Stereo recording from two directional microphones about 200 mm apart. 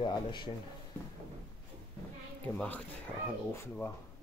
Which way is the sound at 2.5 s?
5° left (ahead or behind).